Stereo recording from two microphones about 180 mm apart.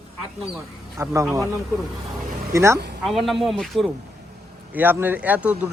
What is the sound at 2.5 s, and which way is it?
Speech, 15° right (ahead or behind).